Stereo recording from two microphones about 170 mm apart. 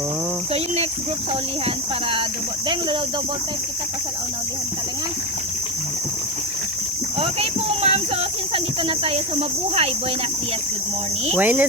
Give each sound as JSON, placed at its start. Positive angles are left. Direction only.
{"t": 1.6, "sound": "speech", "side_deg": -30}
{"t": 7.2, "sound": "speech", "side_deg": -35}
{"t": 11.3, "sound": "cricket", "side_deg": -10}